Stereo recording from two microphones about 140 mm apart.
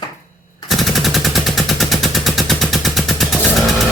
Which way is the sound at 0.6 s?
Centre (ahead or behind).